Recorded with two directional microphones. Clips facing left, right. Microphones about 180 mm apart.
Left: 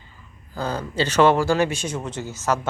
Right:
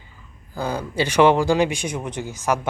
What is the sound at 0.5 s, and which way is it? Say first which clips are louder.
Speech: right 1 dB; 10° right (ahead or behind).